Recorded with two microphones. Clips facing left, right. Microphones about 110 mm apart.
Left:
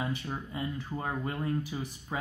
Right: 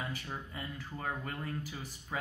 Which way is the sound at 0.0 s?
20° left (ahead or behind).